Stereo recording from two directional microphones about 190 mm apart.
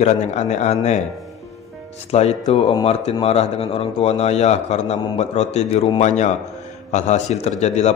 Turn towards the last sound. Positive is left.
turn(degrees=35)  # may be behind; listen again after turning